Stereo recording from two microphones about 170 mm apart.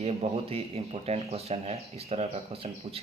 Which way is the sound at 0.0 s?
40° right (ahead or behind).